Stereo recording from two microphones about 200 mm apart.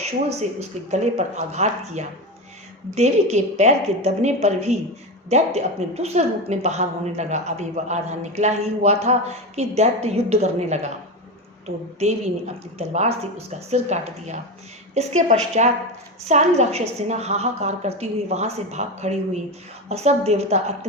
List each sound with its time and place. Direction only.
0.0 s a woman's voice: 35° right (ahead or behind)